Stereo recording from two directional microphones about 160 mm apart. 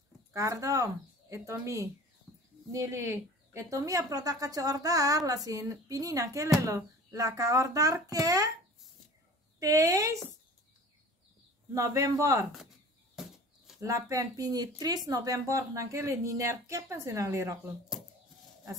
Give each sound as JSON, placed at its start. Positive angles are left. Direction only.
{"t": 0.3, "sound": "speech", "side_deg": -20}
{"t": 9.6, "sound": "speech", "side_deg": -20}
{"t": 11.7, "sound": "speech", "side_deg": -20}
{"t": 13.1, "sound": "a sound", "side_deg": 0}
{"t": 13.7, "sound": "speech", "side_deg": -20}